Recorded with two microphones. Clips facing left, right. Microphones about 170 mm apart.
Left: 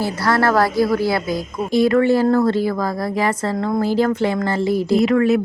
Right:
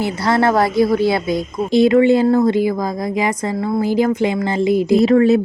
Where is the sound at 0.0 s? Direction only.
20° right (ahead or behind).